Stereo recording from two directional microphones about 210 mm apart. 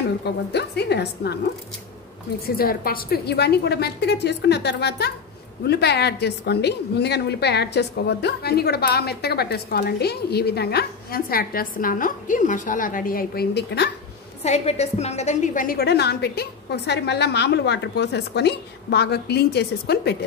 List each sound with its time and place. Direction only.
0.2 s a woman's voice: 50° left (ahead or behind)
2.4 s a woman's voice: 45° left (ahead or behind)
14.4 s a woman's voice: 30° left (ahead or behind); by 20.2 s 50° left (ahead or behind)